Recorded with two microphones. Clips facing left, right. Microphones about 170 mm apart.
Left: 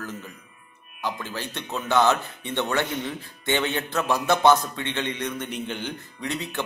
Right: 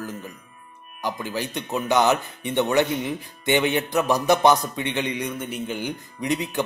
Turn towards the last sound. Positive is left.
turn(degrees=-15)  # may be behind; listen again after turning